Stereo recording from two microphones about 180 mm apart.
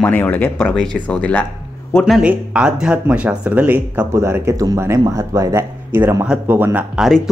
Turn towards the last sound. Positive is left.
turn(degrees=0)  # may be behind; listen again after turning